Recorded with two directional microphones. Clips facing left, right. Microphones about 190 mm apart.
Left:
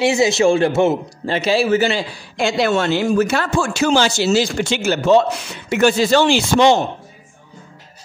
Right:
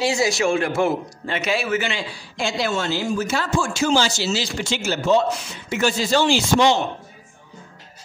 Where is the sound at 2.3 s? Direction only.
65° left (ahead or behind).